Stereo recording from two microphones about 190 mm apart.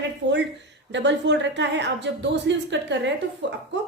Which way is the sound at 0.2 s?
65° right (ahead or behind).